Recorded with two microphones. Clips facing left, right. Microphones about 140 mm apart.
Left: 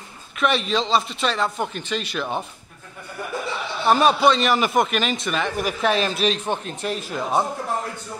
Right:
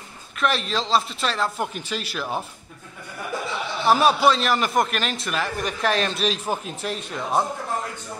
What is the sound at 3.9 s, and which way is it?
A man's voice, 5° right (ahead or behind).